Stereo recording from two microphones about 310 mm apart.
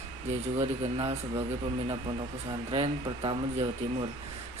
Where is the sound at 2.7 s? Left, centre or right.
Centre.